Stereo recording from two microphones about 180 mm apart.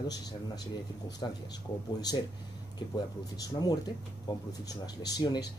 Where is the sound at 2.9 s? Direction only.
20° left (ahead or behind).